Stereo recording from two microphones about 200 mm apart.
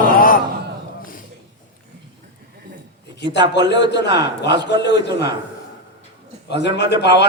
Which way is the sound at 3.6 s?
60° left (ahead or behind).